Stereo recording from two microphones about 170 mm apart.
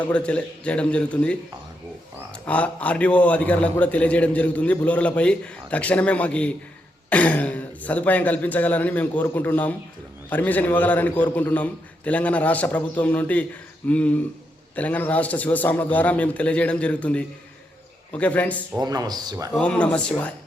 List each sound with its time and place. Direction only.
0.0 s a man's voice: 5° left (ahead or behind)
18.8 s speech: 25° right (ahead or behind)
19.5 s a man's voice: 5° left (ahead or behind)